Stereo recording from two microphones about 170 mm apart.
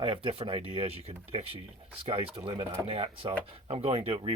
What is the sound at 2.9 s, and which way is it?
Speech, 35° right (ahead or behind).